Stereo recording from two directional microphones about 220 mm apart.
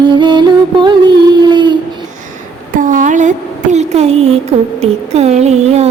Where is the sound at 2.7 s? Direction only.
35° right (ahead or behind).